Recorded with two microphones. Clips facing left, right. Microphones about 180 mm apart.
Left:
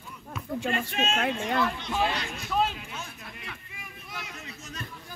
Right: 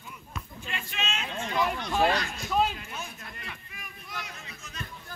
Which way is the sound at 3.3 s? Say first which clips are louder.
Left 1 dB; centre (ahead or behind).